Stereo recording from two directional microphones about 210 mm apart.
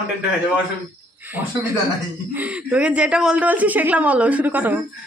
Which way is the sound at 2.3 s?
5° right (ahead or behind).